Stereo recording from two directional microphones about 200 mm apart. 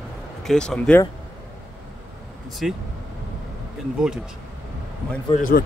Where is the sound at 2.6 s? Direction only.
Centre (ahead or behind).